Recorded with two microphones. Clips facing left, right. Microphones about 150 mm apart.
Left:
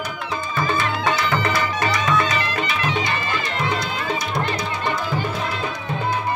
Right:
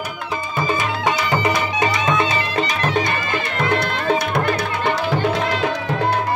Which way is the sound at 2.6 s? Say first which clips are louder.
Right 3 dB; 40° right (ahead or behind).